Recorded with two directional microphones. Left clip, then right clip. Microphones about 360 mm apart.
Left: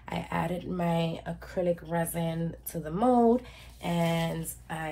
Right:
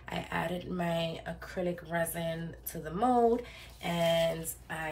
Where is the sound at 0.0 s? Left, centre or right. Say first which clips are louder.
Left 2 dB; centre.